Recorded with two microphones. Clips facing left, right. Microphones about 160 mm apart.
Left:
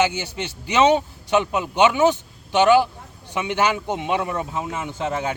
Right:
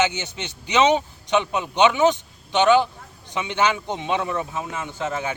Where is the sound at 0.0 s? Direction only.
10° left (ahead or behind).